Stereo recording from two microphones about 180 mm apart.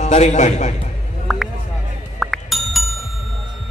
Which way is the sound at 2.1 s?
Centre (ahead or behind).